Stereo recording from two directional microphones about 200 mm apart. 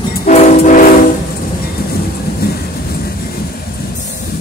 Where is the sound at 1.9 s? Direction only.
50° left (ahead or behind).